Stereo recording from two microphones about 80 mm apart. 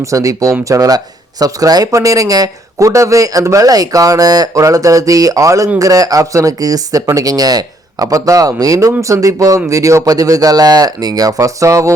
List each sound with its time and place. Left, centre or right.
0.0 s speech: right